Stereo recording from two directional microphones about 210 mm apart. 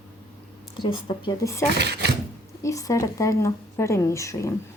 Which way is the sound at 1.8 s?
50° right (ahead or behind).